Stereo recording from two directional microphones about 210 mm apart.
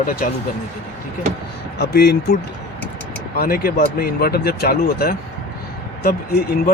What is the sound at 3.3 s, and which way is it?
Speech, 45° left (ahead or behind).